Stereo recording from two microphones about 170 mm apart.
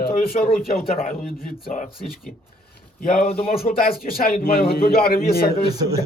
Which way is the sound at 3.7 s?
55° left (ahead or behind).